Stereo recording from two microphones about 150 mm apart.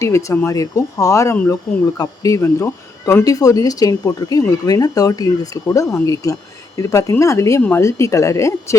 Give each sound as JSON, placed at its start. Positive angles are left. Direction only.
{"t": 0.0, "sound": "speech", "side_deg": 20}